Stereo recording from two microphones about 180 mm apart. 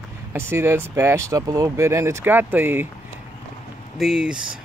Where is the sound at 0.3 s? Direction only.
15° right (ahead or behind).